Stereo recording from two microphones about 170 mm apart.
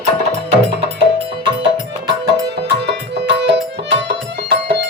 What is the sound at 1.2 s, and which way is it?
Music, 30° right (ahead or behind).